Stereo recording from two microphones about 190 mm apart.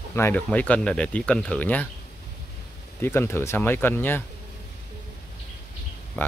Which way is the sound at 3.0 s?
10° left (ahead or behind).